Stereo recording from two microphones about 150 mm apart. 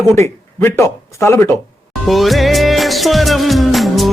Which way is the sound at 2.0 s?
Centre (ahead or behind).